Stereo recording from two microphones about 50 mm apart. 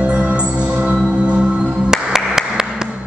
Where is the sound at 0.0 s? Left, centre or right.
Right.